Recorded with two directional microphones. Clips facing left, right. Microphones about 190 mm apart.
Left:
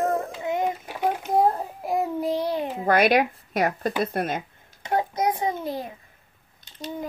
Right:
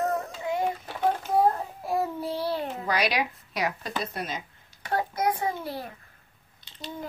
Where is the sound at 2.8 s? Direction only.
50° left (ahead or behind).